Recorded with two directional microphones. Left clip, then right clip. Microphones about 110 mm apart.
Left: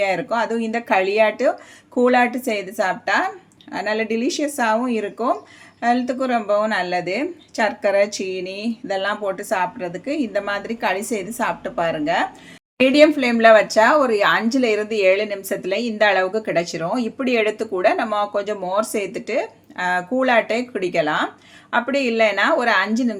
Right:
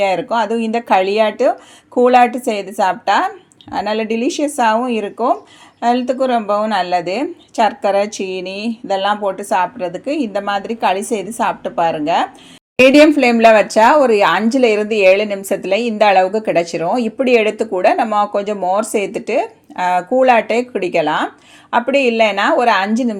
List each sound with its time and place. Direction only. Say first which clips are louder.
0.0 s speech: right 5 dB; 35° right (ahead or behind)
12.8 s a woman's voice: right 6 dB; 45° right (ahead or behind)